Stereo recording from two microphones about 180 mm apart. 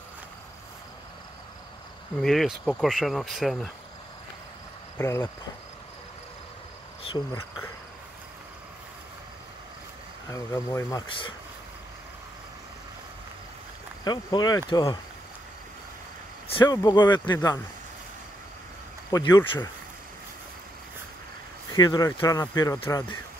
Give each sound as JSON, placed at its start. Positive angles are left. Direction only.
{"t": 2.2, "sound": "speech", "side_deg": 0}
{"t": 4.9, "sound": "speech", "side_deg": 15}
{"t": 10.3, "sound": "speech", "side_deg": 15}
{"t": 14.0, "sound": "speech", "side_deg": 25}
{"t": 16.5, "sound": "speech", "side_deg": 20}
{"t": 19.0, "sound": "speech", "side_deg": 20}
{"t": 21.7, "sound": "speech", "side_deg": 20}